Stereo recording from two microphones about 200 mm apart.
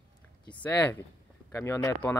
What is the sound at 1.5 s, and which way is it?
Speech, 15° left (ahead or behind).